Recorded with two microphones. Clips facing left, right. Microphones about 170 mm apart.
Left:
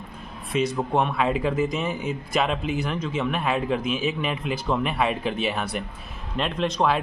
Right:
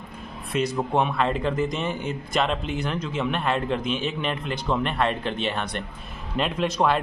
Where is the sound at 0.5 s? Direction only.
Centre (ahead or behind).